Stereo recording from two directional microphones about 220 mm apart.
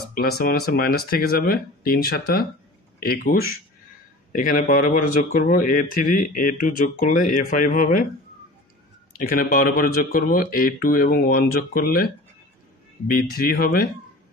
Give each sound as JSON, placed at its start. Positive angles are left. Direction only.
{"t": 0.1, "sound": "speech", "side_deg": 40}
{"t": 9.2, "sound": "speech", "side_deg": 40}
{"t": 13.1, "sound": "speech", "side_deg": 40}